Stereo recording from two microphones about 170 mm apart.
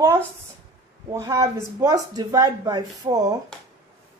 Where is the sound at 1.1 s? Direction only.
20° right (ahead or behind).